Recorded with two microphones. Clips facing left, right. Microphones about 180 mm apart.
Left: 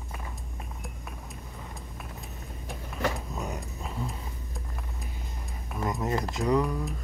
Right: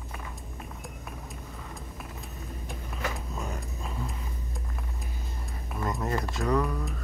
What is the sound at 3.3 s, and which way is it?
Vehicle, 20° left (ahead or behind).